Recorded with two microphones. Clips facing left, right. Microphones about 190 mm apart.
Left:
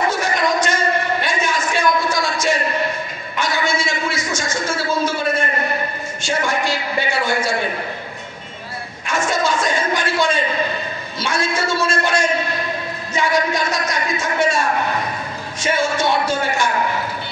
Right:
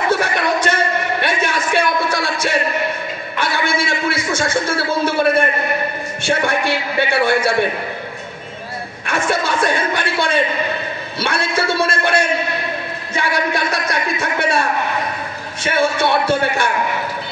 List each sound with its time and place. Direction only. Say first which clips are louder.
0.1 s a sound: right 2 dB; 60° right (ahead or behind)
3.3 s a man's voice: right 1 dB; 60° right (ahead or behind)
9.0 s speech: even; 60° right (ahead or behind)
15.6 s speech: right 2 dB; 60° right (ahead or behind)